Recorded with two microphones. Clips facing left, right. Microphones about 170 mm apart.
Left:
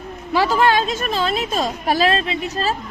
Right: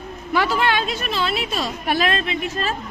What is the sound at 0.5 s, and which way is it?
A woman's voice, 40° left (ahead or behind).